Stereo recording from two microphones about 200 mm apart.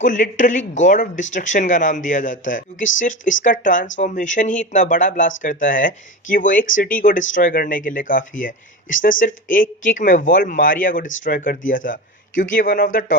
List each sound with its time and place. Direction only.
0.0 s speech: 40° left (ahead or behind)